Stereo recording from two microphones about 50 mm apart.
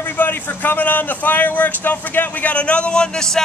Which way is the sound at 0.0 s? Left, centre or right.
Left.